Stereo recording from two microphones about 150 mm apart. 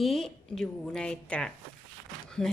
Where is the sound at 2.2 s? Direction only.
5° left (ahead or behind).